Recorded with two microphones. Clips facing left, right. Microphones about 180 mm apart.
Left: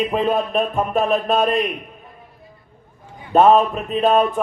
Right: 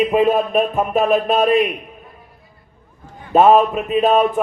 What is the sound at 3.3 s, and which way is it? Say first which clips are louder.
A man's voice: right 1 dB; centre (ahead or behind).